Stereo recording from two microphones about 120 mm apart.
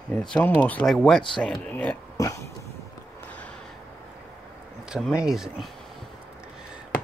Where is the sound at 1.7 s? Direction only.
15° left (ahead or behind).